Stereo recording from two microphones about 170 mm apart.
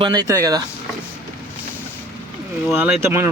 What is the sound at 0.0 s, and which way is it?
Speech, 25° right (ahead or behind).